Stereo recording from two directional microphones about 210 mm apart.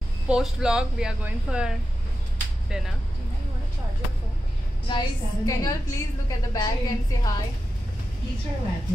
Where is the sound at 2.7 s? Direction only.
5° right (ahead or behind).